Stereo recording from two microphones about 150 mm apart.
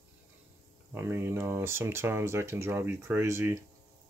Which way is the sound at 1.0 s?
15° right (ahead or behind).